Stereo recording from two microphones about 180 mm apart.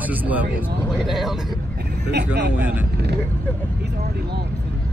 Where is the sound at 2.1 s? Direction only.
70° right (ahead or behind).